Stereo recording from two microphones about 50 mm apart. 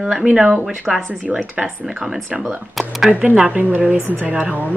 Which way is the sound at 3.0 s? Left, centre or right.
Centre.